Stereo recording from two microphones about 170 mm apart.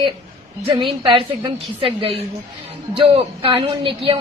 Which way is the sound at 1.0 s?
30° right (ahead or behind).